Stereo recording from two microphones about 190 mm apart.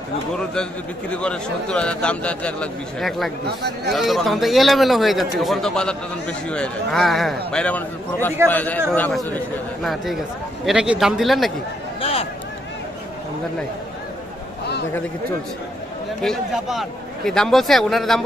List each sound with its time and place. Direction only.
1.1 s a man's voice: 5° left (ahead or behind)
3.4 s speech: 60° right (ahead or behind)
3.9 s a man's voice: centre (ahead or behind)
10.6 s a man's voice: 5° right (ahead or behind)
12.0 s a sound: 30° left (ahead or behind)
16.2 s a man's voice: centre (ahead or behind)